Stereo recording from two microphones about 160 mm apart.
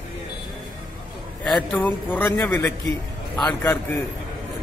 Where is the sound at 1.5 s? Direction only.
10° left (ahead or behind).